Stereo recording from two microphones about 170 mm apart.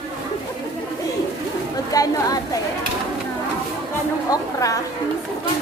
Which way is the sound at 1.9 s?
20° left (ahead or behind).